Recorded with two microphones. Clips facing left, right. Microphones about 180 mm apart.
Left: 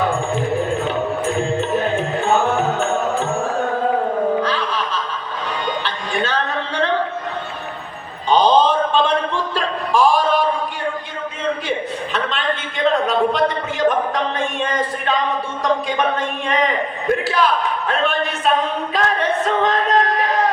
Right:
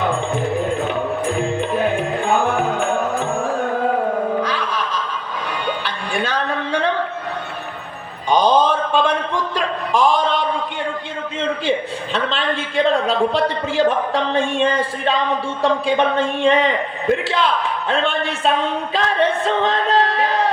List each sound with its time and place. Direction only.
2.0 s music: 10° right (ahead or behind)
4.4 s laughter: 10° right (ahead or behind)
5.6 s music: 10° right (ahead or behind)
8.3 s a sound: 10° right (ahead or behind)
12.1 s a sound: 30° right (ahead or behind)
15.6 s a man's voice: 30° right (ahead or behind)
18.9 s music: 30° right (ahead or behind)